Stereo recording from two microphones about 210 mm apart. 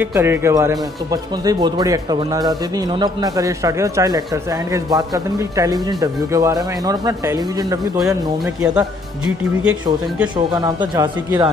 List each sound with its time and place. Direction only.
0.0 s speech: 10° right (ahead or behind)
8.5 s speech: 5° right (ahead or behind)
10.3 s speech: 20° right (ahead or behind)